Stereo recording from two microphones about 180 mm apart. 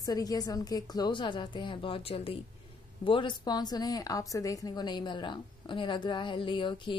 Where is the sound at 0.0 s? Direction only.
20° left (ahead or behind).